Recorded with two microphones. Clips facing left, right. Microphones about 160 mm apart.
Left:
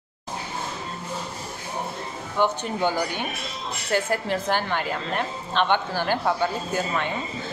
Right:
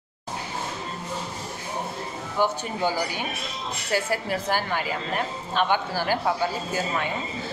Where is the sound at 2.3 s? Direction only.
10° right (ahead or behind).